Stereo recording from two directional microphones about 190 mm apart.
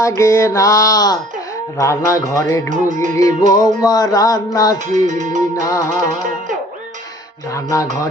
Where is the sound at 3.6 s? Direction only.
20° left (ahead or behind).